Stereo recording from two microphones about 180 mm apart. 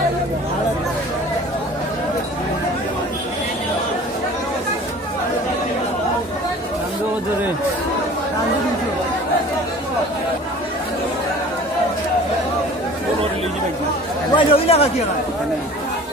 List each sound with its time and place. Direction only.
14.3 s chatter: 35° left (ahead or behind)